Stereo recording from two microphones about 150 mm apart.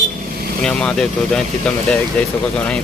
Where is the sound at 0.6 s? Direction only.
5° left (ahead or behind).